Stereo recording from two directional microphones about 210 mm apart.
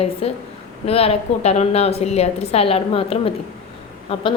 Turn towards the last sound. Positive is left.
turn(degrees=25)  # may be behind; listen again after turning